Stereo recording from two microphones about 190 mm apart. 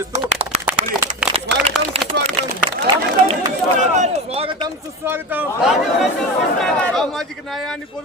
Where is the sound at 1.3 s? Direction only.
30° right (ahead or behind).